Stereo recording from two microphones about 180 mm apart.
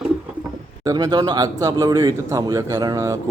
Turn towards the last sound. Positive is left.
turn(degrees=-20)  # may be behind; listen again after turning